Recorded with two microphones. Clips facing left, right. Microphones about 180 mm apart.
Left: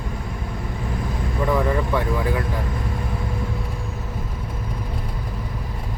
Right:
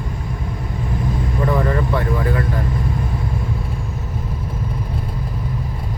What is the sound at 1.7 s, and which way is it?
Speech, 10° left (ahead or behind).